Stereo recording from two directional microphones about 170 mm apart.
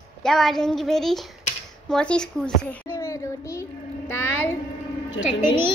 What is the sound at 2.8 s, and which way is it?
Child singing, 15° left (ahead or behind).